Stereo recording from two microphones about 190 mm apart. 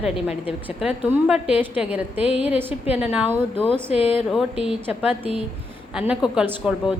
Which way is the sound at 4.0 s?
30° left (ahead or behind).